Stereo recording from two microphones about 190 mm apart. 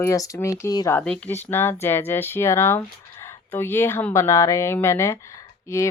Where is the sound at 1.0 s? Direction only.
5° left (ahead or behind).